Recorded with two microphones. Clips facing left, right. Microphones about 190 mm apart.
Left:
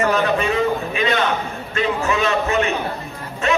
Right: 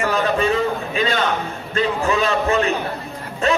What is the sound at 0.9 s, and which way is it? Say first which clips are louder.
A man's voice: even; 35° right (ahead or behind).